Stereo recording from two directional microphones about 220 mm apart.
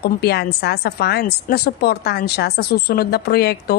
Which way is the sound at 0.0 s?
45° left (ahead or behind).